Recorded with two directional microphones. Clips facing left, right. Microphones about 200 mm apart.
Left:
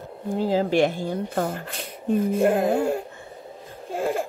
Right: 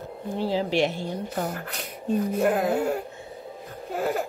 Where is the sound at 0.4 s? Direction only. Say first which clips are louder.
Left 4 dB; 45° left (ahead or behind).